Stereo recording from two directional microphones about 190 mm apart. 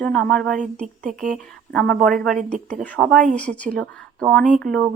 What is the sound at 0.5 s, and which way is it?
Speech, 40° right (ahead or behind).